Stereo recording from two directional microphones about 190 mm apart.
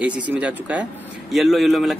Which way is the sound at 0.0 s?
5° right (ahead or behind).